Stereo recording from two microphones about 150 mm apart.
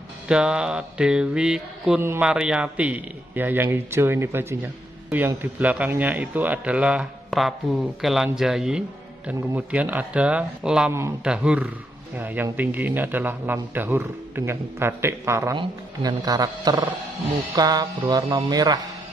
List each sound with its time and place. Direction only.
0.3 s mantra: 5° right (ahead or behind)
2.0 s a man's voice: 15° right (ahead or behind)
10.9 s a man's voice: 20° right (ahead or behind)
11.2 s a man's voice: 5° right (ahead or behind); by 18.9 s 25° right (ahead or behind)